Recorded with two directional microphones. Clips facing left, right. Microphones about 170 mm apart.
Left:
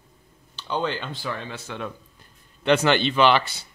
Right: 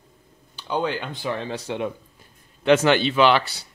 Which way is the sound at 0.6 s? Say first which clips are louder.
Right 2 dB; 10° right (ahead or behind).